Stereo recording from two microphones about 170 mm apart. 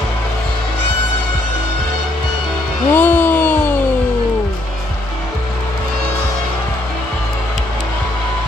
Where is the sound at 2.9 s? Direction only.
10° left (ahead or behind).